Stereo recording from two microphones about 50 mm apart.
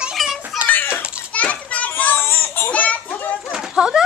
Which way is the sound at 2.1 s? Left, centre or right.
Left.